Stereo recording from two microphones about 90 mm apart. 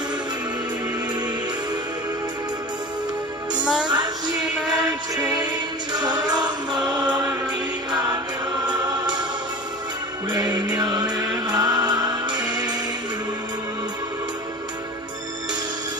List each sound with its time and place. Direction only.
3.8 s music: 55° right (ahead or behind)
8.6 s choir: 55° right (ahead or behind)
10.3 s music: 50° right (ahead or behind)